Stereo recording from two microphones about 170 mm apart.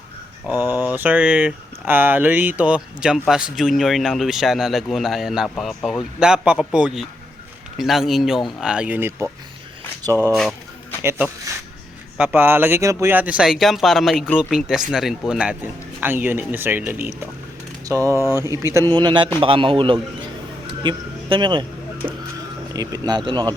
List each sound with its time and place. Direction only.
0.4 s speech: 10° right (ahead or behind)
12.1 s a man's voice: 10° right (ahead or behind); by 21.7 s 25° right (ahead or behind)
22.7 s a man's voice: 20° right (ahead or behind)